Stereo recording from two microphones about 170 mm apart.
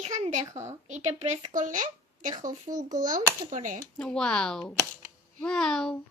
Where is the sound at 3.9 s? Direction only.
5° left (ahead or behind).